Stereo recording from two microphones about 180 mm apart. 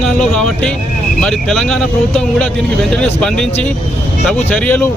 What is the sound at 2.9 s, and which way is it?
Speech, 5° left (ahead or behind).